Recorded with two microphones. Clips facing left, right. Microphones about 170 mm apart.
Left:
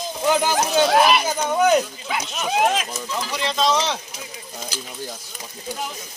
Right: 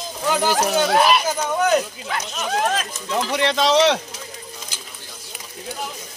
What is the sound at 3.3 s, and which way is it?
Speech, 70° right (ahead or behind).